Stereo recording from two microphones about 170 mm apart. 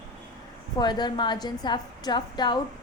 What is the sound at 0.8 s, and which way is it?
A woman's voice, 25° left (ahead or behind).